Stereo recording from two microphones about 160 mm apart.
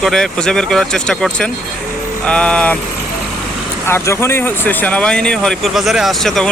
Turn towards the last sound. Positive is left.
turn(degrees=0)  # may be behind; listen again after turning